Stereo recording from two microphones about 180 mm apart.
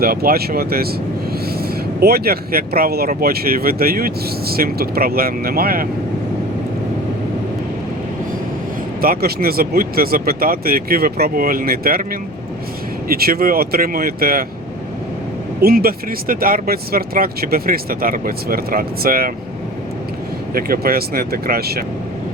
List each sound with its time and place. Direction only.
0.0 s speech: 55° right (ahead or behind)
2.0 s speech: 60° right (ahead or behind)
9.0 s speech: 55° right (ahead or behind)
13.1 s speech: 55° right (ahead or behind)
15.6 s speech: 55° right (ahead or behind)
20.5 s speech: 55° right (ahead or behind)